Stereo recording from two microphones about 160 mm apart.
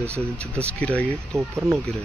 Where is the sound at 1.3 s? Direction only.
15° right (ahead or behind).